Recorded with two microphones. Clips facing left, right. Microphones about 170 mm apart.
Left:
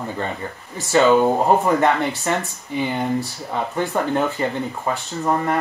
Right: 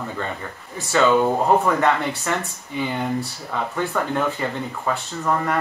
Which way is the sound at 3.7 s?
25° left (ahead or behind).